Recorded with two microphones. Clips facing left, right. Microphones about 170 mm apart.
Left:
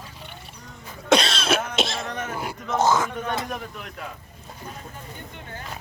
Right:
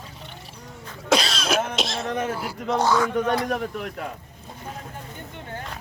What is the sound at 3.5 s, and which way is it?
Speech, 55° right (ahead or behind).